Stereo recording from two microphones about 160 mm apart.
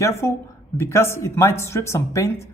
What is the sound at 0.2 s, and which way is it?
A woman's voice, 15° left (ahead or behind).